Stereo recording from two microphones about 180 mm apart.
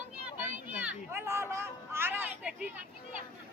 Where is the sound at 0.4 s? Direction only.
10° right (ahead or behind).